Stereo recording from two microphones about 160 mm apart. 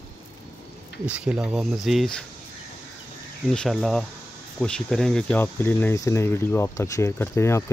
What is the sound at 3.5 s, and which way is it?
Speech, 5° left (ahead or behind).